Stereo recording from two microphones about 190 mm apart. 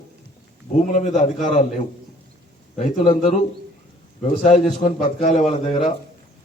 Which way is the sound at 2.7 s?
40° left (ahead or behind).